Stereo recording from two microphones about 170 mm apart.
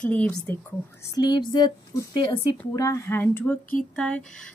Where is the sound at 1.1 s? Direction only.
25° left (ahead or behind); by 4.4 s 5° left (ahead or behind).